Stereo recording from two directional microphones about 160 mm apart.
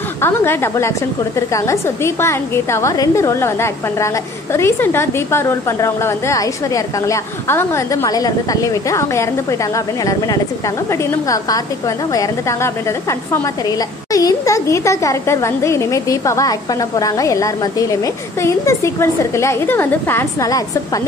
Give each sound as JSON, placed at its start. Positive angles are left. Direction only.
{"t": 0.2, "sound": "a woman's voice", "side_deg": 15}